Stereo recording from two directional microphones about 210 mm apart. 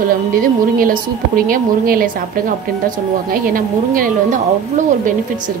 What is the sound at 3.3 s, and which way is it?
A woman's voice, 40° right (ahead or behind).